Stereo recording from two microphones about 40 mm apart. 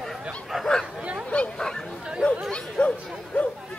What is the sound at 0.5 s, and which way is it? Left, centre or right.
Bow-wow, centre.